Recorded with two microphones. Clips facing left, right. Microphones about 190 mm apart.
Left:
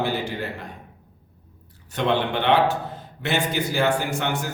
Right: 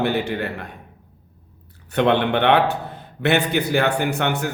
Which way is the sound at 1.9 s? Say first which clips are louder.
Right 5 dB; 65° right (ahead or behind).